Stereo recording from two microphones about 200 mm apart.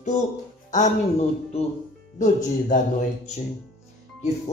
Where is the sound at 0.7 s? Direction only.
35° left (ahead or behind).